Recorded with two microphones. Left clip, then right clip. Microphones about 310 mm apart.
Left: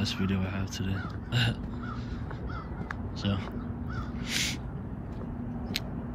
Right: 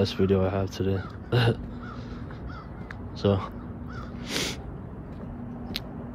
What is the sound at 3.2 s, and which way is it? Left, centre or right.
Speech, centre.